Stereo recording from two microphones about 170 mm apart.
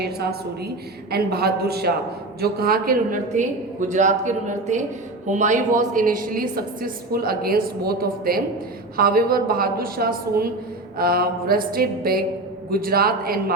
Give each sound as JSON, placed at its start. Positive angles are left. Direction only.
{"t": 0.0, "sound": "a man's voice", "side_deg": -70}